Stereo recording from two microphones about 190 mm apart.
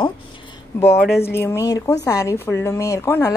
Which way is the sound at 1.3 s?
15° left (ahead or behind).